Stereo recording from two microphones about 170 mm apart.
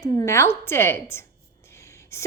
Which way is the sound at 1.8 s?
15° left (ahead or behind).